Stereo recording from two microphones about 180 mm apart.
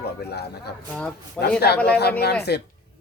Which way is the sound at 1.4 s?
5° left (ahead or behind).